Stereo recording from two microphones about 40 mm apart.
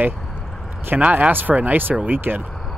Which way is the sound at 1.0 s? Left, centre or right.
Right.